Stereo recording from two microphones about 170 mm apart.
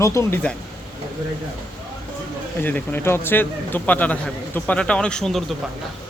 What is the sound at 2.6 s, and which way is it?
A man's voice, 10° left (ahead or behind).